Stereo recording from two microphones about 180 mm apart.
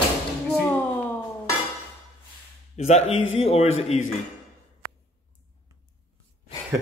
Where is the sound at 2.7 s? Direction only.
35° left (ahead or behind).